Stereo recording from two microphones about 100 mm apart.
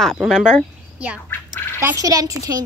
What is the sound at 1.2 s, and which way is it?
Speech, 20° left (ahead or behind).